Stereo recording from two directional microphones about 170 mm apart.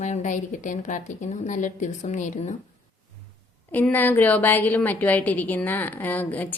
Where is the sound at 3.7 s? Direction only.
10° left (ahead or behind).